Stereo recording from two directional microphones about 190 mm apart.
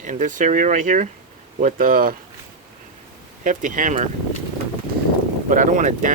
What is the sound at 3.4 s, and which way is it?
Speech, 40° right (ahead or behind).